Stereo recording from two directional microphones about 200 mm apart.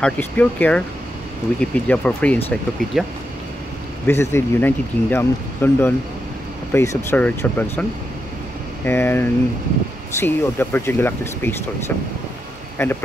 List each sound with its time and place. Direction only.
0.0 s speech: 5° left (ahead or behind)
4.1 s speech: 10° left (ahead or behind)
8.8 s speech: 10° left (ahead or behind)
12.8 s speech: 10° left (ahead or behind)